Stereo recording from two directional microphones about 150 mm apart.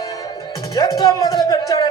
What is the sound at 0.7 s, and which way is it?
Music, 25° left (ahead or behind).